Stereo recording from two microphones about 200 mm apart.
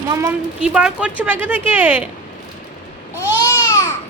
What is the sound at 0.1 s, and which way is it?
Speech, 15° right (ahead or behind).